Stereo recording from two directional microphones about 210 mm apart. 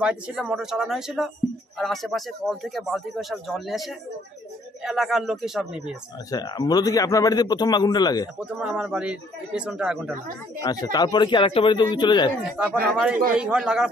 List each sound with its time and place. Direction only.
0.0 s speech: 5° right (ahead or behind)
6.3 s a man's voice: 20° left (ahead or behind)
8.4 s speech: 5° right (ahead or behind)
10.6 s a man's voice: 20° left (ahead or behind)
12.5 s speech: 5° right (ahead or behind)